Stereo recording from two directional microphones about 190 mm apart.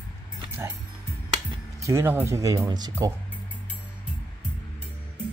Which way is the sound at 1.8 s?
15° right (ahead or behind).